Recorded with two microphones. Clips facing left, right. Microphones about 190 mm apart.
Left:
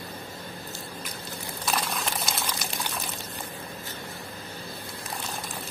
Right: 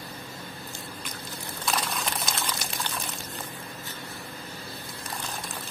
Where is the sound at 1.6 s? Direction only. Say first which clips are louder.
Even; centre (ahead or behind).